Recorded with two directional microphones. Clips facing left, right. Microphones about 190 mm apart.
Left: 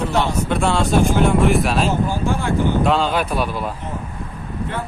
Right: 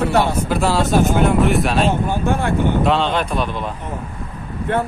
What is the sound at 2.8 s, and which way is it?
Speech, centre (ahead or behind).